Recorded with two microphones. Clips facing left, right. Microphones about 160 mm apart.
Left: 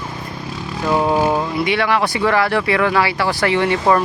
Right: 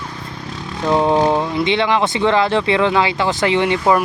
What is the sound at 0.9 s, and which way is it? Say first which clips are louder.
Speech: right 2 dB; 20° right (ahead or behind).